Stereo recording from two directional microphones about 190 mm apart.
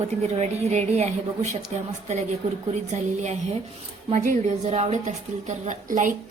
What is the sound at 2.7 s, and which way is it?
A woman's voice, 40° right (ahead or behind).